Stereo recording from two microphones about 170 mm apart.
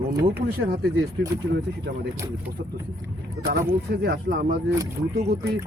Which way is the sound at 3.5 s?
70° right (ahead or behind).